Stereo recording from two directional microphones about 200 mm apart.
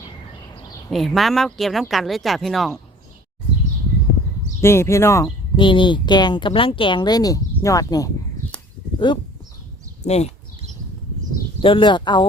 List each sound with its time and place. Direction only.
0.9 s speech: centre (ahead or behind)
4.6 s speech: 15° left (ahead or behind)
10.0 s speech: 35° left (ahead or behind)
11.6 s speech: 25° left (ahead or behind)